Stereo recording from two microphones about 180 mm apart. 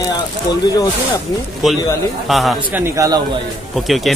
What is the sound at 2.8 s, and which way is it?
Speech, 15° right (ahead or behind).